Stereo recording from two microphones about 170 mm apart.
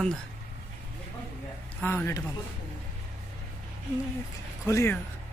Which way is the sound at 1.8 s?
15° left (ahead or behind).